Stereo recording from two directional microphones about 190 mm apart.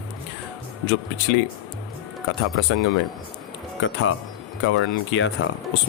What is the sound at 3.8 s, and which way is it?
Speech, 80° left.